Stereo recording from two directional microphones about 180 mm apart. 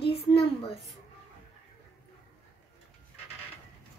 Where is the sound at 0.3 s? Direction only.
30° left (ahead or behind).